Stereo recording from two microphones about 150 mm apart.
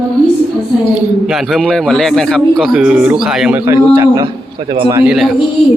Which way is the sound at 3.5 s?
15° right (ahead or behind).